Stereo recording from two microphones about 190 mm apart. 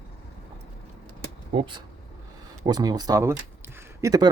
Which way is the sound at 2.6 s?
20° right (ahead or behind).